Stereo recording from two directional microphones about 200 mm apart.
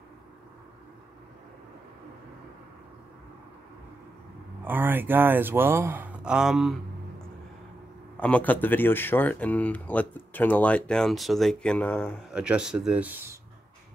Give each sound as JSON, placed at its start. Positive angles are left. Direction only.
{"t": 4.6, "sound": "speech", "side_deg": -10}
{"t": 8.2, "sound": "speech", "side_deg": 5}
{"t": 12.3, "sound": "speech", "side_deg": -5}